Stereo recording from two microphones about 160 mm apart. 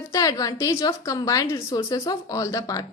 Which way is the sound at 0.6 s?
20° left (ahead or behind).